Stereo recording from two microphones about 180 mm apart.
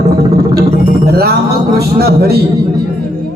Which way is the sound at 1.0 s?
60° right (ahead or behind).